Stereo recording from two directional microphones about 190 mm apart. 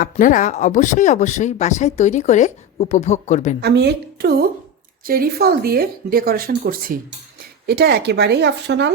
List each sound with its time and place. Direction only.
0.0 s speech: 45° left (ahead or behind)
3.6 s speech: 60° right (ahead or behind)